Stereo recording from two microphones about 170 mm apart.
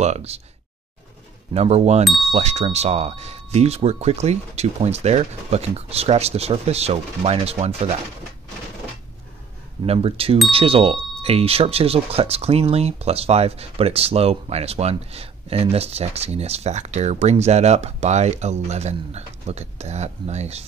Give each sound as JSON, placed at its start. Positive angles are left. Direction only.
{"t": 0.0, "sound": "speech", "side_deg": -40}
{"t": 1.5, "sound": "speech", "side_deg": -40}
{"t": 9.8, "sound": "speech", "side_deg": -35}